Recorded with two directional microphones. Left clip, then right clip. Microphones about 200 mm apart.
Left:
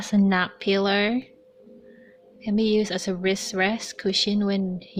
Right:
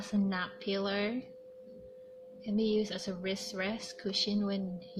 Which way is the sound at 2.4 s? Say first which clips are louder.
Left 9 dB; 40° left (ahead or behind).